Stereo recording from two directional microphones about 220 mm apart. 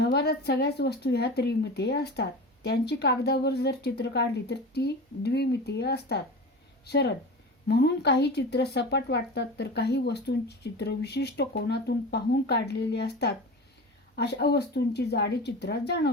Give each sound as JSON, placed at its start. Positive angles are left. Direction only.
{"t": 0.0, "sound": "speech", "side_deg": 45}